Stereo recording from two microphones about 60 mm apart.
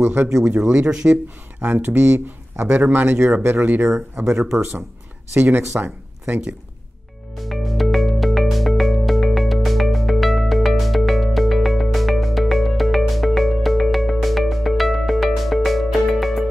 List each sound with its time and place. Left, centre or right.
0.0 s speech: right
0.6 s speech: centre
1.6 s speech: right
5.3 s speech: right
7.3 s music: centre